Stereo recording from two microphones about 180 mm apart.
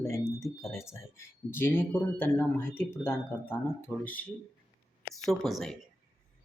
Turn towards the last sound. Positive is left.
turn(degrees=0)  # may be behind; listen again after turning